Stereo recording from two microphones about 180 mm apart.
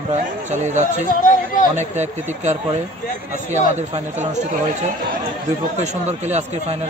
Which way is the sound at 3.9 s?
40° right (ahead or behind).